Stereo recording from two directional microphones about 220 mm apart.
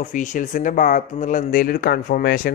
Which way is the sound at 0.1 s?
35° left (ahead or behind).